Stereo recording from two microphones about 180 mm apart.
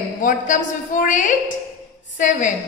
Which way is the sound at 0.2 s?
45° left (ahead or behind).